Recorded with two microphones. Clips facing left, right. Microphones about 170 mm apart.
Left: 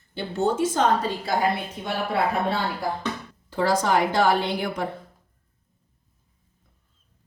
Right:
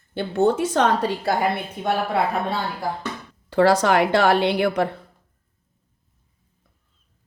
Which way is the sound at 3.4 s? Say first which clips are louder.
Right 5 dB; 70° right (ahead or behind).